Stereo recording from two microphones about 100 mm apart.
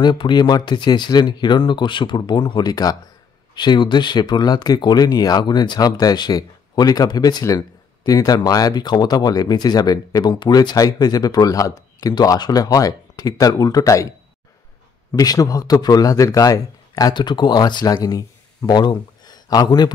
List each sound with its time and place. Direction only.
0.0 s speech: 50° left (ahead or behind)
3.5 s speech: 50° left (ahead or behind)
15.1 s speech: 35° left (ahead or behind)
17.1 s speech: 50° left (ahead or behind)